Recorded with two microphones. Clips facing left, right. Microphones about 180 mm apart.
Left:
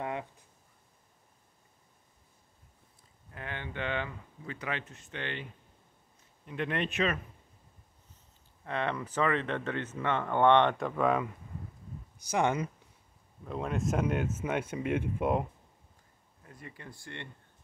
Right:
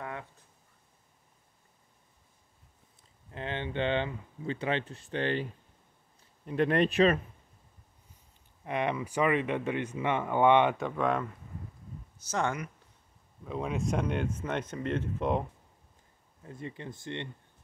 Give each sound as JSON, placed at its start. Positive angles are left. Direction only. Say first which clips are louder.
{"t": 0.0, "sound": "a sound", "louder": "left 4 dB", "side_deg": 20}
{"t": 3.3, "sound": "speech", "louder": "right 6 dB", "side_deg": -25}
{"t": 8.6, "sound": "speech", "louder": "right 2 dB", "side_deg": -15}
{"t": 12.2, "sound": "speech", "louder": "left 3 dB", "side_deg": 15}
{"t": 13.4, "sound": "speech", "louder": "even", "side_deg": 0}
{"t": 16.4, "sound": "speech", "louder": "right 7 dB", "side_deg": -25}